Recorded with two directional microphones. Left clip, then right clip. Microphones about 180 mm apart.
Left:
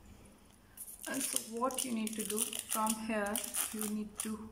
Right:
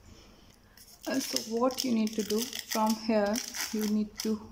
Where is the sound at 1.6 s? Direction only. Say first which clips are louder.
Right 6 dB; 25° right (ahead or behind).